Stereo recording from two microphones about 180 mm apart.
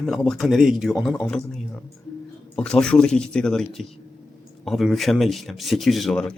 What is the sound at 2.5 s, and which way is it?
Speech, 5° left (ahead or behind).